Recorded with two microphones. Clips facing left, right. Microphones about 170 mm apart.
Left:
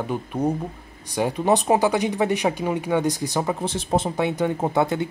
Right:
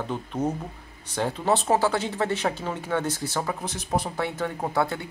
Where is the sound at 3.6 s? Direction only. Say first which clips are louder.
Left 5 dB; 30° left (ahead or behind).